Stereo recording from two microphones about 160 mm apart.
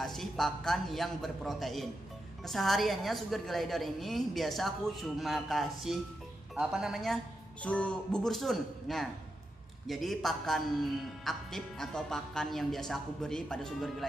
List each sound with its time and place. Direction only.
0.0 s a man's voice: centre (ahead or behind)